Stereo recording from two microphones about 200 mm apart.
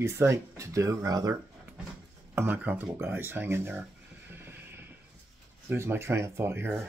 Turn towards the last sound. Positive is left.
turn(degrees=-10)  # may be behind; listen again after turning